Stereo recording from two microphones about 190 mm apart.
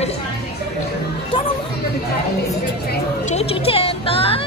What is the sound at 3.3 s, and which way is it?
Speech, 35° left (ahead or behind).